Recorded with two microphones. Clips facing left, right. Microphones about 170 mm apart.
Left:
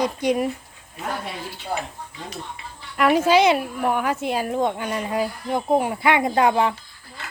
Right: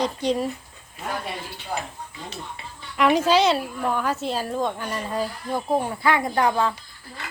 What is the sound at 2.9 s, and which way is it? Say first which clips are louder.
Speech: left 2 dB; 5° left (ahead or behind).